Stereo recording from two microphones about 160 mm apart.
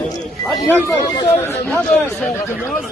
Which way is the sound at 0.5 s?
25° left (ahead or behind).